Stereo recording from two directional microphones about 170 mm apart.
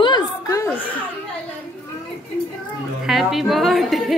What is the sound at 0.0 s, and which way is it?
Chuckle, 20° left (ahead or behind).